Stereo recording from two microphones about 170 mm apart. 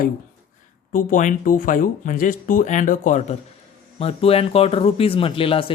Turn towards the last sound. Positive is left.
turn(degrees=30)  # may be behind; listen again after turning